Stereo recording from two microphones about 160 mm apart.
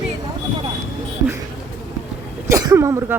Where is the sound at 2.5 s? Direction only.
20° right (ahead or behind).